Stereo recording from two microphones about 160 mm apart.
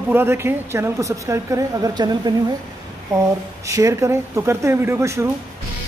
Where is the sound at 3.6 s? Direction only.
20° right (ahead or behind).